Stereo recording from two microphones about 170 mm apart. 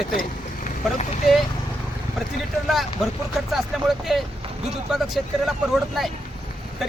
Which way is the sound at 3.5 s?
Centre (ahead or behind).